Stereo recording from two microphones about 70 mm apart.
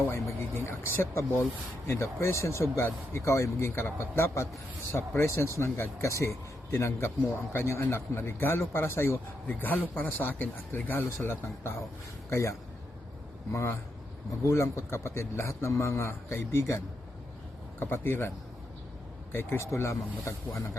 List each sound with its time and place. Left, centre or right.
0.1 s speech: left
9.5 s speech: left
12.3 s speech: left
19.3 s speech: left